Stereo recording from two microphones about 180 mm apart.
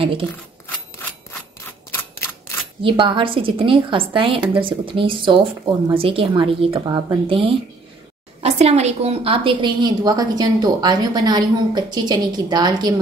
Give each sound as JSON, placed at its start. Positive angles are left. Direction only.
{"t": 0.7, "sound": "rub", "side_deg": 10}
{"t": 2.8, "sound": "a woman's voice", "side_deg": -30}